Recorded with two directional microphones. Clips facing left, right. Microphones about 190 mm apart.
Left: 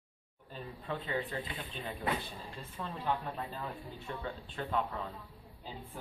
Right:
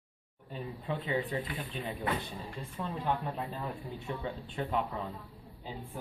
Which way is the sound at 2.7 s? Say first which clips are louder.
Right 2 dB; 10° right (ahead or behind).